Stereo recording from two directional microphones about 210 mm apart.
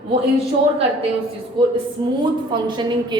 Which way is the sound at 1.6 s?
25° right (ahead or behind).